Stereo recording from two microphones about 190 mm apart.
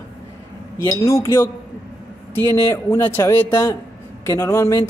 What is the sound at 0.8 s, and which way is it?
A man's voice, 15° left (ahead or behind).